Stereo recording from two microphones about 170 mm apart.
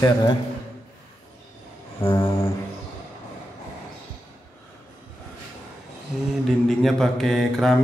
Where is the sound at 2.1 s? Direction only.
20° left (ahead or behind).